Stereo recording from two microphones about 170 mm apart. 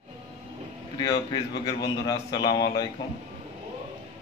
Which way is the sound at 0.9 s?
25° left (ahead or behind).